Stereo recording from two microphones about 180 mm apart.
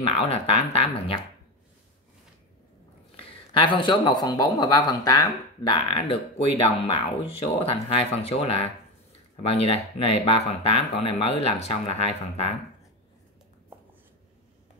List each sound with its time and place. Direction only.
0.0 s speech: 35° left (ahead or behind)
3.2 s a man's voice: 30° left (ahead or behind)